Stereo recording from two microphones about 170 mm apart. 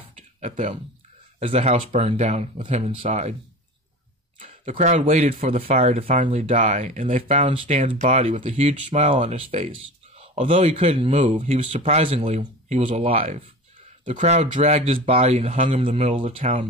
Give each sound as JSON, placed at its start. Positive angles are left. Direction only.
{"t": 0.4, "sound": "speech", "side_deg": -45}
{"t": 4.6, "sound": "speech", "side_deg": -45}
{"t": 13.7, "sound": "speech", "side_deg": -50}